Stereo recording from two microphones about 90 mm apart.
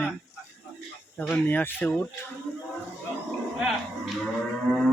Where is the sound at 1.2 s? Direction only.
15° left (ahead or behind).